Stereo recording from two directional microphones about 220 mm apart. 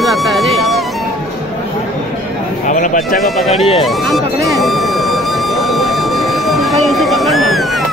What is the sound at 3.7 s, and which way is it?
Speech, centre (ahead or behind).